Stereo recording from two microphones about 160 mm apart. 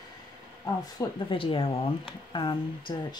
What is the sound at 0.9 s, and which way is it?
Speech, 35° left (ahead or behind).